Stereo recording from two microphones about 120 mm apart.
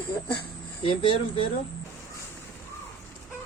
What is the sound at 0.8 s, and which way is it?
Speech, 50° left (ahead or behind).